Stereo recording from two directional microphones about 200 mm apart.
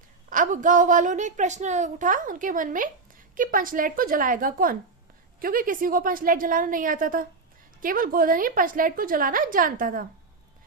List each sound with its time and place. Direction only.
0.3 s a woman's voice: 40° right (ahead or behind)